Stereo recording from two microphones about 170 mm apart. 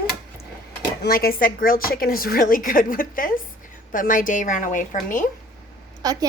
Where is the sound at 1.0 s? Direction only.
60° left (ahead or behind).